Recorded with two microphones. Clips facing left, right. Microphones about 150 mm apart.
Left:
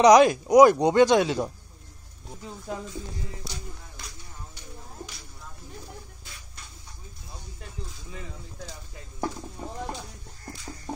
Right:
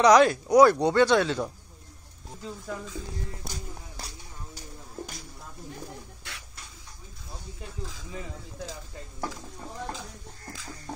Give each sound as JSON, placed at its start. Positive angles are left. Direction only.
{"t": 0.0, "sound": "speech", "side_deg": 15}
{"t": 2.7, "sound": "speech", "side_deg": 20}
{"t": 3.4, "sound": "music", "side_deg": -40}
{"t": 4.6, "sound": "a sound", "side_deg": -45}
{"t": 6.2, "sound": "a sound", "side_deg": -70}
{"t": 9.6, "sound": "clip-clop", "side_deg": 10}